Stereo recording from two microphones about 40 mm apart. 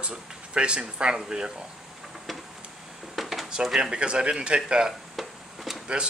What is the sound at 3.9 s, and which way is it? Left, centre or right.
Speech, right.